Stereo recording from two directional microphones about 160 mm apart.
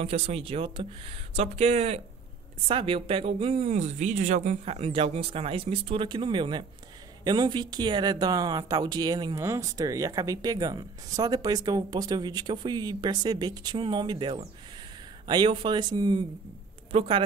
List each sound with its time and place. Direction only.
0.0 s speech: 40° right (ahead or behind)